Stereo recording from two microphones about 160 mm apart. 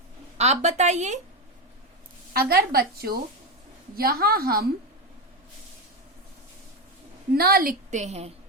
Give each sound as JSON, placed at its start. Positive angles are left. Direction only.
{"t": 0.3, "sound": "a woman's voice", "side_deg": -45}
{"t": 2.3, "sound": "a woman's voice", "side_deg": -70}
{"t": 7.3, "sound": "a woman's voice", "side_deg": -70}